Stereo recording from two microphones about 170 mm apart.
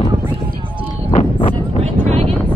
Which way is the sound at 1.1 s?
40° left (ahead or behind).